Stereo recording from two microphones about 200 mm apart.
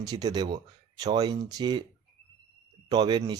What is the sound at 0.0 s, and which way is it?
Speech, 20° right (ahead or behind).